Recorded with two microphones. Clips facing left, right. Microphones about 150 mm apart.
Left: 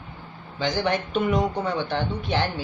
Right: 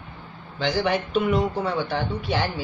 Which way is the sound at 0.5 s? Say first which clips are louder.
Right 1 dB; centre (ahead or behind).